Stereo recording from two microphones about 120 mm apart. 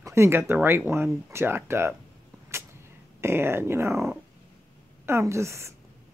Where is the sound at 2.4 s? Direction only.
20° right (ahead or behind).